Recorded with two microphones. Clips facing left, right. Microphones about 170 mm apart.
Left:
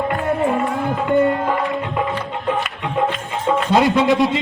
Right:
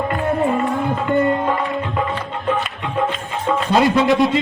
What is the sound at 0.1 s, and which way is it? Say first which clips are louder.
Music: even; centre (ahead or behind).